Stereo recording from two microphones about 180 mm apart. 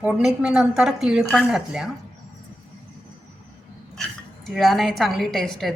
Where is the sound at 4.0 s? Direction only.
Centre (ahead or behind).